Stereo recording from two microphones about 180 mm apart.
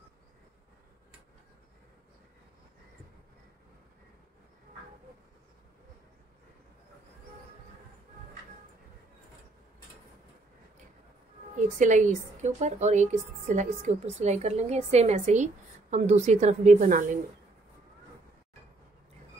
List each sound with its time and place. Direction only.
11.5 s speech: 45° right (ahead or behind)